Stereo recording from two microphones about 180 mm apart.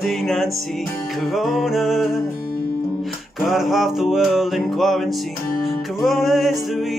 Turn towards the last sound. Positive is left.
turn(degrees=0)  # may be behind; listen again after turning